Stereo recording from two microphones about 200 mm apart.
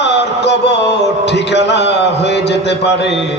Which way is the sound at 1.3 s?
60° left (ahead or behind).